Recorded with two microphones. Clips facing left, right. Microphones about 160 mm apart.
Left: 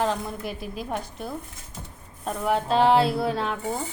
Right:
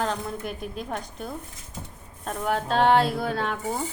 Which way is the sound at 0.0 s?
Centre (ahead or behind).